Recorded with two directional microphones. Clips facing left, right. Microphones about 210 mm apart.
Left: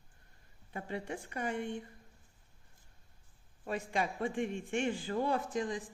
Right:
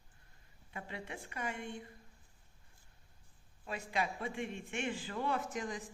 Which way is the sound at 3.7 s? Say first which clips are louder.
Left 3 dB; 45° left (ahead or behind).